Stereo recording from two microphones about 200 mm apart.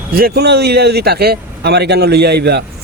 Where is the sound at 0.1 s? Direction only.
50° right (ahead or behind).